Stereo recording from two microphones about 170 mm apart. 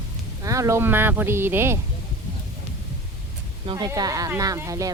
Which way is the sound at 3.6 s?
25° right (ahead or behind).